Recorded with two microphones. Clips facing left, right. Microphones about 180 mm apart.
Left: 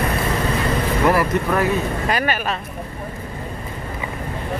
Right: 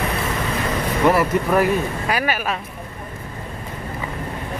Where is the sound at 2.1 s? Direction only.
5° right (ahead or behind).